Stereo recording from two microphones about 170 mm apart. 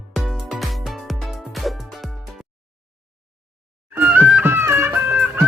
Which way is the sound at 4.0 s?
10° right (ahead or behind).